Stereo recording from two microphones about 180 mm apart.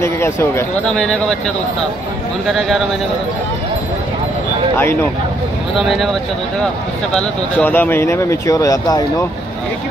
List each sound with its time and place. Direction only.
0.0 s speech: 15° left (ahead or behind)
2.4 s a man's voice: centre (ahead or behind)
5.8 s a man's voice: centre (ahead or behind)
7.2 s speech: 10° left (ahead or behind)